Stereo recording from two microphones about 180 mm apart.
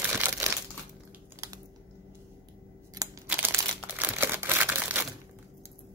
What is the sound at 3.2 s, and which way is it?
Crumpling, 10° right (ahead or behind).